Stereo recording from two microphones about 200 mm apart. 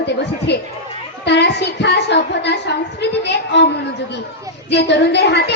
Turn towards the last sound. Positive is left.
turn(degrees=55)  # may be behind; listen again after turning